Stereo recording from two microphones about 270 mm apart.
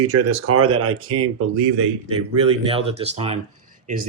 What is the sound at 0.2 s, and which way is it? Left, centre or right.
Speech, right.